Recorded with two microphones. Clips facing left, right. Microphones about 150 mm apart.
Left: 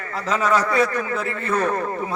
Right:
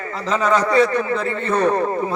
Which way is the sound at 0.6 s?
30° right (ahead or behind).